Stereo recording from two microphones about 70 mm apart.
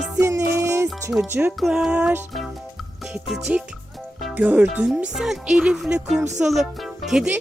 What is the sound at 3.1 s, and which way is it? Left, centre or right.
Music, centre.